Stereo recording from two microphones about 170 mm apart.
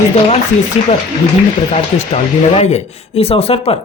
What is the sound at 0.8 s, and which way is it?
Speech, 35° left (ahead or behind).